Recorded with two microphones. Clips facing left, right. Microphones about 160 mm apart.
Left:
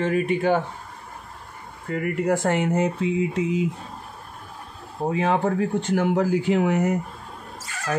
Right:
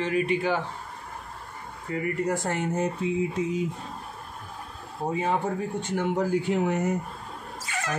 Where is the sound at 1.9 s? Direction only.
60° left (ahead or behind); by 3.6 s 90° left.